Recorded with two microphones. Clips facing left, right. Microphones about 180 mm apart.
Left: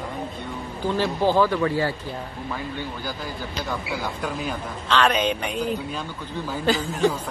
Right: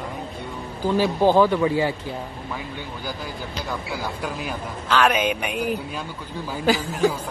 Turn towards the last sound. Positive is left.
turn(degrees=-10)  # may be behind; listen again after turning